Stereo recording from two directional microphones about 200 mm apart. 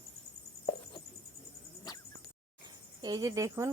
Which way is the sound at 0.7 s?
15° left (ahead or behind).